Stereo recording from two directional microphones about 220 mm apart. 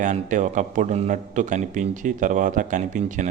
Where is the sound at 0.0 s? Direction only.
35° right (ahead or behind).